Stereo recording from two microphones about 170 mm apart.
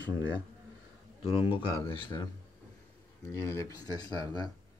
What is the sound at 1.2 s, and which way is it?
Speech, 35° left (ahead or behind).